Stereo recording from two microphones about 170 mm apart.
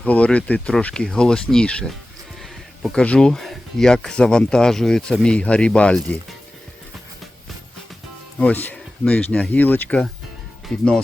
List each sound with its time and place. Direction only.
0.0 s speech: 5° left (ahead or behind)
8.4 s speech: 10° left (ahead or behind)